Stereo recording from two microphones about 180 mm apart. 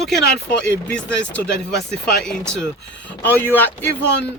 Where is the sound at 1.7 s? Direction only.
65° left (ahead or behind).